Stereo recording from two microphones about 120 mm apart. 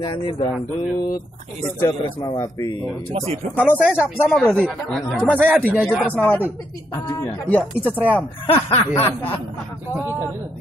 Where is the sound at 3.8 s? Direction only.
10° right (ahead or behind).